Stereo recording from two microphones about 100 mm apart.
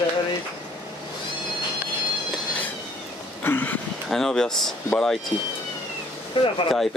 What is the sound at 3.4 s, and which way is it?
Vehicle, 20° left (ahead or behind).